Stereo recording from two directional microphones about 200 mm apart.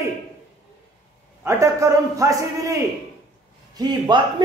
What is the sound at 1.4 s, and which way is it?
A man's voice, 15° right (ahead or behind).